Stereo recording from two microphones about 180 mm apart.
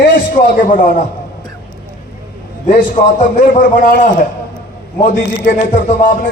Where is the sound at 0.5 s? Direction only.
45° left (ahead or behind).